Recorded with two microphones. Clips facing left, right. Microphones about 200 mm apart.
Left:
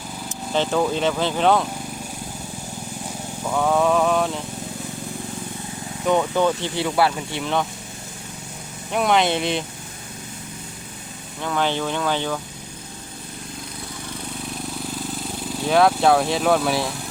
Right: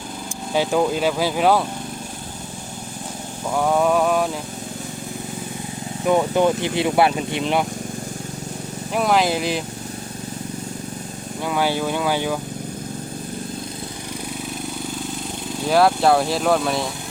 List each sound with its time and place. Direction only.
0.5 s speech: 10° right (ahead or behind)
3.4 s speech: 5° right (ahead or behind)
6.1 s speech: 15° right (ahead or behind)
8.9 s speech: centre (ahead or behind)
11.4 s speech: 10° right (ahead or behind)
15.6 s speech: centre (ahead or behind)